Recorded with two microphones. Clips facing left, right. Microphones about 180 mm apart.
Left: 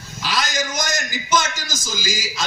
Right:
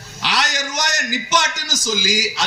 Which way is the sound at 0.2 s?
70° right (ahead or behind).